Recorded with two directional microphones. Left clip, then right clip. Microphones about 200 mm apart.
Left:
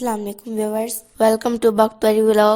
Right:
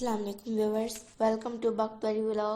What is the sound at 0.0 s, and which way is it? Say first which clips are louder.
A woman's voice: left 9 dB; 50° left (ahead or behind).